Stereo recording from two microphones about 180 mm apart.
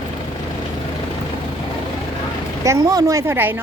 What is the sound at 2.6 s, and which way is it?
Speech, 20° right (ahead or behind).